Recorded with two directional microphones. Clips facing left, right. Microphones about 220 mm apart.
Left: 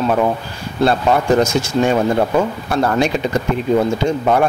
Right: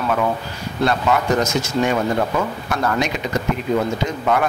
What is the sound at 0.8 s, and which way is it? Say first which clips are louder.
Speech: left 4 dB; 30° left (ahead or behind).